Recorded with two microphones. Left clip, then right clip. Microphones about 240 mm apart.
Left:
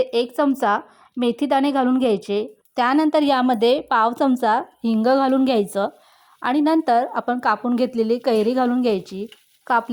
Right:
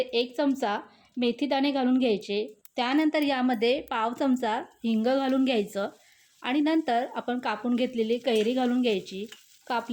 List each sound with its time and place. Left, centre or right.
0.0 s a woman's voice: left